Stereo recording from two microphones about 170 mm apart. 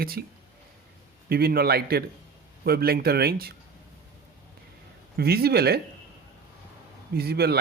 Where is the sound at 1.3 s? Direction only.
65° right (ahead or behind).